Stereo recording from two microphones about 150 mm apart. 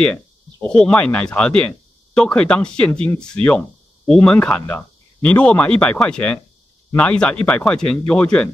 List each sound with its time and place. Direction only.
0.0 s a man's voice: 5° left (ahead or behind)